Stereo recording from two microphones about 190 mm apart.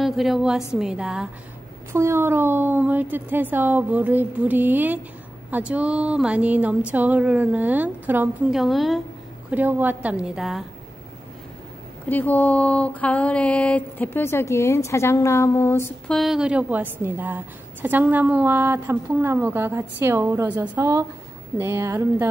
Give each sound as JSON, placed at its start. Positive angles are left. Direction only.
{"t": 0.0, "sound": "a woman's voice", "side_deg": 0}
{"t": 12.1, "sound": "a sound", "side_deg": 10}
{"t": 16.2, "sound": "a woman's voice", "side_deg": -5}